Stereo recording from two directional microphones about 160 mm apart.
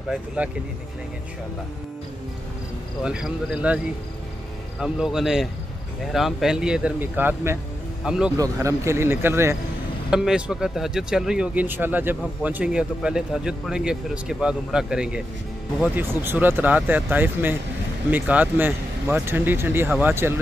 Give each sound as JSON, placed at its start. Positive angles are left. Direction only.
{"t": 3.0, "sound": "speech", "side_deg": -5}
{"t": 8.4, "sound": "speech", "side_deg": -20}
{"t": 10.1, "sound": "speech", "side_deg": -5}